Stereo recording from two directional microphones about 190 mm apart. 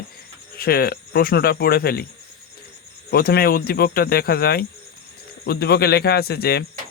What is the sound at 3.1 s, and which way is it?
Speech, 55° left (ahead or behind).